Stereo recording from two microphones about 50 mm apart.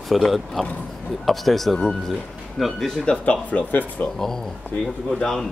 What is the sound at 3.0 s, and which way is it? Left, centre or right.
Speech, left.